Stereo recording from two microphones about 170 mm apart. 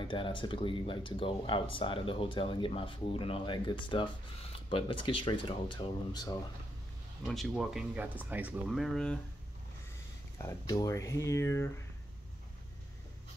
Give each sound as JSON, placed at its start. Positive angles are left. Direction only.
{"t": 0.0, "sound": "speech", "side_deg": 30}
{"t": 7.2, "sound": "speech", "side_deg": 0}
{"t": 10.4, "sound": "speech", "side_deg": 20}